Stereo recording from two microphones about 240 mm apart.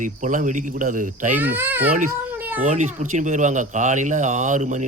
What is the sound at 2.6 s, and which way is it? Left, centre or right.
Speech, right.